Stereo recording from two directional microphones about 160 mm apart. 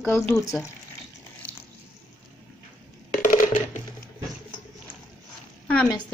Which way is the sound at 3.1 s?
55° left (ahead or behind).